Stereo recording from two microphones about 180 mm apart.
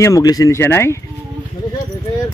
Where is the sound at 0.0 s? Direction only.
20° left (ahead or behind).